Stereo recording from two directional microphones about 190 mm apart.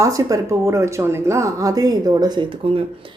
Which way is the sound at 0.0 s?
15° right (ahead or behind).